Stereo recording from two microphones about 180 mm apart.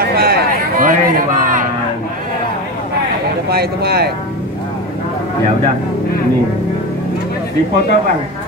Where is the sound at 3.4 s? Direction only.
60° right (ahead or behind).